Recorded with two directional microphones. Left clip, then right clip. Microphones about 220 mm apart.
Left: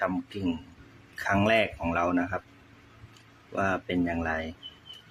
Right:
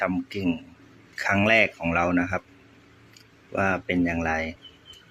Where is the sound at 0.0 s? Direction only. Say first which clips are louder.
Right 3 dB; centre (ahead or behind).